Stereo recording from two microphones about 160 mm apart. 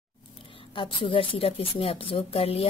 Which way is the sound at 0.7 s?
30° left (ahead or behind).